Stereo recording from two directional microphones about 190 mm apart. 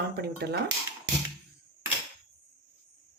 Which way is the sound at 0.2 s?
60° right (ahead or behind).